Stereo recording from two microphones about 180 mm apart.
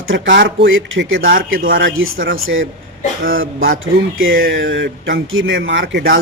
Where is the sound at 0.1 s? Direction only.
85° right.